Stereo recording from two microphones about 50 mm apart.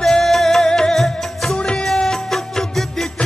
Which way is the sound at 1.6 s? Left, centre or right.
Centre.